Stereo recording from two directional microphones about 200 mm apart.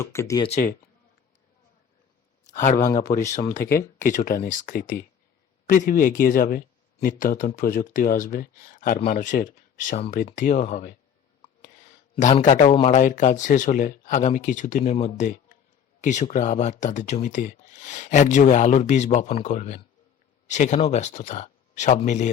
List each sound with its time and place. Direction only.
0.0 s speech: 15° left (ahead or behind)
2.7 s speech: 15° left (ahead or behind)
3.0 s speech: 35° left (ahead or behind)